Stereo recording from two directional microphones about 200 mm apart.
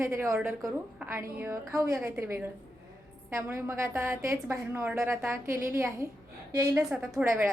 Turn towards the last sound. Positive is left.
turn(degrees=-5)  # may be behind; listen again after turning